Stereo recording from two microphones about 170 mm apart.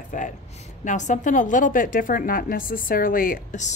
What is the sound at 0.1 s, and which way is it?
A woman's voice, 45° left (ahead or behind).